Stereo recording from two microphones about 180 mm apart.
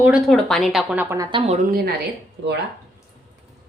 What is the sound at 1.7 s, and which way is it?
Speech, 55° right (ahead or behind).